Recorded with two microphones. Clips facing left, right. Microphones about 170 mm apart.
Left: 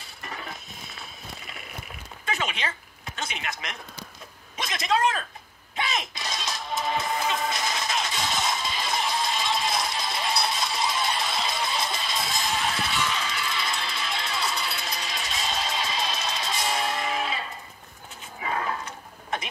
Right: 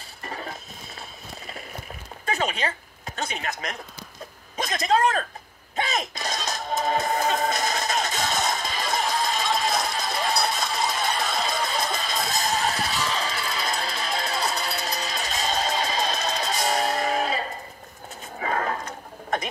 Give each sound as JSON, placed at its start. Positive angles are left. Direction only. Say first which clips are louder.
{"t": 0.2, "sound": "a sound", "louder": "right 3 dB", "side_deg": -35}
{"t": 2.2, "sound": "a man's voice", "louder": "right 4 dB", "side_deg": -40}
{"t": 5.8, "sound": "music", "louder": "right 3 dB", "side_deg": -45}
{"t": 18.4, "sound": "television", "louder": "right 3 dB", "side_deg": -45}